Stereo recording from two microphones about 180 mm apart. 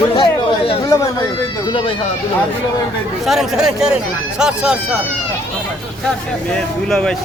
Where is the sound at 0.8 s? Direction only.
15° left (ahead or behind).